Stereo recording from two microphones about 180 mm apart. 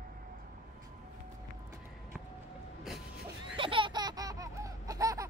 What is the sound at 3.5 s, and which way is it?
Laughter, 30° right (ahead or behind).